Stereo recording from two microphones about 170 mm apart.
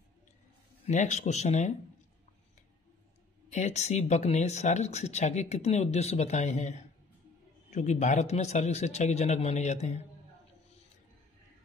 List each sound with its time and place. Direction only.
0.8 s speech: 45° left (ahead or behind)
3.4 s a man's voice: 40° left (ahead or behind)